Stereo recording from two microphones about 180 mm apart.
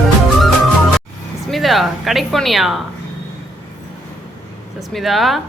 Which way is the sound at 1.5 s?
Centre (ahead or behind).